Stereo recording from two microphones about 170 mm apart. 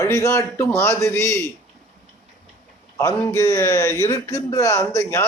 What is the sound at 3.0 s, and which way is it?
A man's voice, 15° left (ahead or behind).